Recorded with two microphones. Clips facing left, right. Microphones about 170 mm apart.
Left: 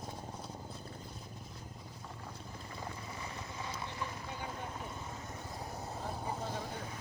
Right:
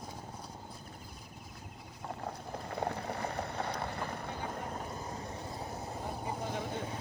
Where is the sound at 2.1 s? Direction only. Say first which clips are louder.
Right 10 dB; 65° right (ahead or behind); by 5.2 s 50° right (ahead or behind).